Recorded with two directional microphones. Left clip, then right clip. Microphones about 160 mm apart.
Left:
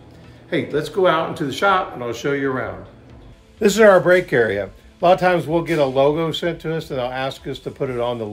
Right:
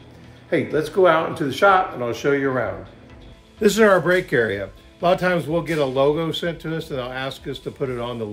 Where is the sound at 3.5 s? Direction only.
15° left (ahead or behind).